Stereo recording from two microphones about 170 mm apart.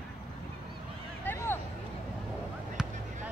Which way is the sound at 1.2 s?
15° left (ahead or behind).